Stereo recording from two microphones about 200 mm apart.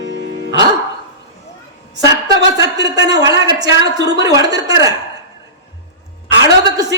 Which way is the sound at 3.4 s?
20° right (ahead or behind).